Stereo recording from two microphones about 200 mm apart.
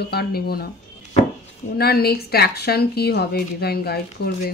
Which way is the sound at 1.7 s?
50° left (ahead or behind).